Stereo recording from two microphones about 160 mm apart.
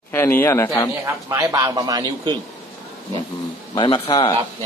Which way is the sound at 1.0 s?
20° right (ahead or behind).